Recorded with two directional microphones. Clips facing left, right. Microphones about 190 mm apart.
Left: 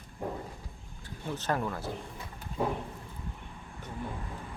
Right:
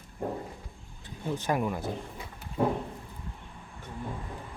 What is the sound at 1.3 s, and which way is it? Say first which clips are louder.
Speech: right 3 dB; 15° right (ahead or behind).